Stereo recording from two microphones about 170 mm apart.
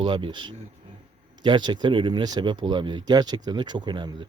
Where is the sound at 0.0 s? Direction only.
30° right (ahead or behind).